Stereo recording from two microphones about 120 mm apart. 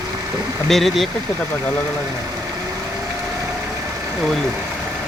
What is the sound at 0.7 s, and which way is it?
Speech, centre (ahead or behind).